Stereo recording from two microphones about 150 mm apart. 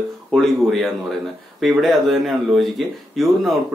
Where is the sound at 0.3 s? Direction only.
Centre (ahead or behind).